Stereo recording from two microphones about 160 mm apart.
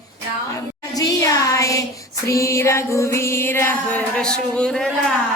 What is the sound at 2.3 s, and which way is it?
Music, 20° left (ahead or behind).